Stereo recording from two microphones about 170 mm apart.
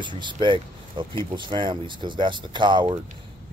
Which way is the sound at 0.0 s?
30° right (ahead or behind).